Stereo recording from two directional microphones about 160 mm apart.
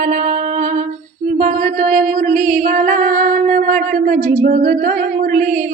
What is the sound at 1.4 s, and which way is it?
Singing, 50° right (ahead or behind).